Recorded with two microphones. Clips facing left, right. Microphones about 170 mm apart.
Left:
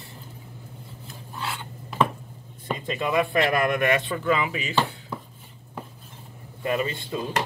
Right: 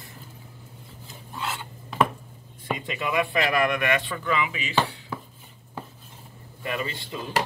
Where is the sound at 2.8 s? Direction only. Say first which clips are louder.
Left 3 dB; 30° left (ahead or behind).